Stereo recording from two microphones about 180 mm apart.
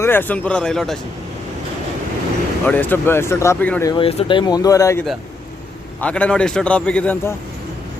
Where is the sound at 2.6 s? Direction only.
10° left (ahead or behind).